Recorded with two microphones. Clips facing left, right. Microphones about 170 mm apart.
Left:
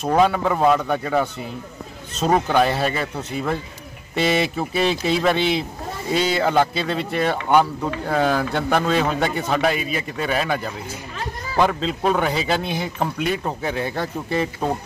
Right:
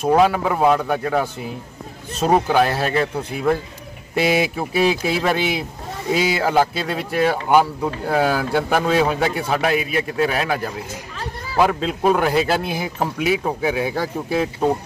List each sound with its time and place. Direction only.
0.0 s a man's voice: 5° right (ahead or behind)